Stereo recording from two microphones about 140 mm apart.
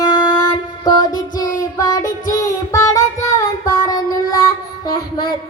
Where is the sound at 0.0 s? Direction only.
30° left (ahead or behind).